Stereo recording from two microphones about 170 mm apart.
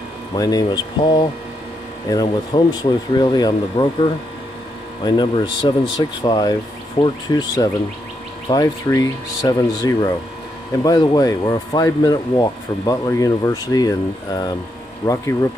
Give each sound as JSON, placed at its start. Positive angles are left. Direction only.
{"t": 0.4, "sound": "speech", "side_deg": 20}